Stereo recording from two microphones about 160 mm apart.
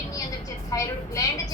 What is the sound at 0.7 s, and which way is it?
Speech, 20° left (ahead or behind).